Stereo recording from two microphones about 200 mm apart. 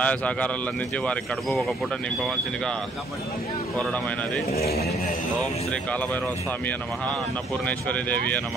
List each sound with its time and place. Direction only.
0.0 s speech: 5° left (ahead or behind)
4.6 s speech: 50° left (ahead or behind)
7.6 s speech: 5° left (ahead or behind)